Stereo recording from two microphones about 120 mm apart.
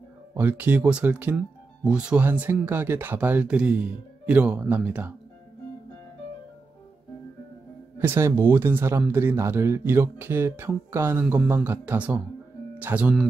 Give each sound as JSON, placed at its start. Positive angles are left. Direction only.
{"t": 0.3, "sound": "speech", "side_deg": -15}
{"t": 8.0, "sound": "speech", "side_deg": -20}